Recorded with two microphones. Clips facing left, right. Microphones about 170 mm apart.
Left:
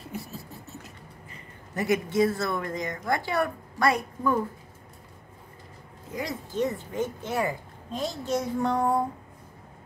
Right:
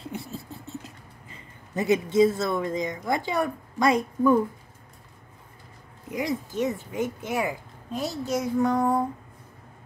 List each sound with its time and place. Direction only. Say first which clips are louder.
0.0 s a sound: right 2 dB; 25° right (ahead or behind)
1.8 s speech: right 3 dB; 20° right (ahead or behind)
6.0 s speech: right 5 dB; 15° right (ahead or behind); by 9.0 s centre (ahead or behind)